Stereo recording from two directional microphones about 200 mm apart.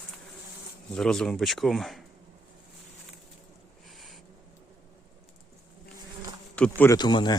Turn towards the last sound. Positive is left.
turn(degrees=20)  # may be behind; listen again after turning